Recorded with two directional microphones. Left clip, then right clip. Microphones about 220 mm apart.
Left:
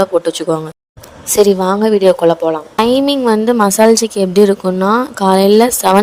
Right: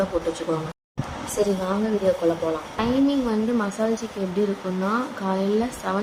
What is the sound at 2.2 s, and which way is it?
A woman's voice, 45° left (ahead or behind).